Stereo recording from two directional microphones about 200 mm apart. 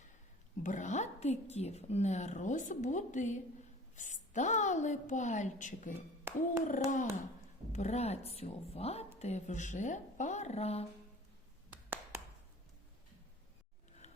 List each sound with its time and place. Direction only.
0.6 s a woman's voice: 40° left (ahead or behind)
6.3 s a sound: 10° right (ahead or behind)
6.7 s a woman's voice: 40° left (ahead or behind)